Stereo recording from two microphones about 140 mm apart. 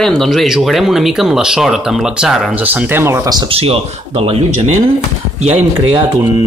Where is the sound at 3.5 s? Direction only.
45° right (ahead or behind).